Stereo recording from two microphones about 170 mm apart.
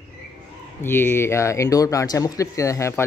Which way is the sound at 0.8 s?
15° left (ahead or behind).